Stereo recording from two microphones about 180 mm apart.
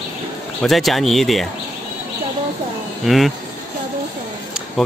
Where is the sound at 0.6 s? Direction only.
Centre (ahead or behind).